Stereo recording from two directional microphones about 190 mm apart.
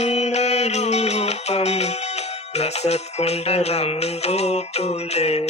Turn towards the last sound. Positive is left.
turn(degrees=35)  # may be behind; listen again after turning